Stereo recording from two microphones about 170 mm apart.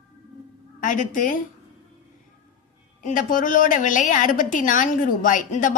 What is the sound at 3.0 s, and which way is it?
A woman's voice, 50° left (ahead or behind).